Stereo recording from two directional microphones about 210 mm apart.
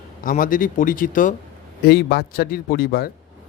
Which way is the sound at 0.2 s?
40° left (ahead or behind).